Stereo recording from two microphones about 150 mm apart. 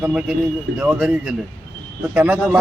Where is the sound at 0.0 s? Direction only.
5° right (ahead or behind).